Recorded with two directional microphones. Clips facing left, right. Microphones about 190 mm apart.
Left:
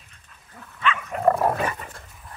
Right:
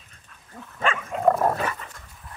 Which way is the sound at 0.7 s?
45° right (ahead or behind).